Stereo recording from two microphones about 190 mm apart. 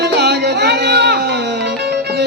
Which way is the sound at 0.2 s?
60° right (ahead or behind).